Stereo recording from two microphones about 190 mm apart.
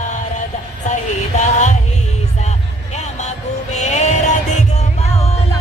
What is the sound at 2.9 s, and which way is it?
Music, 35° left (ahead or behind).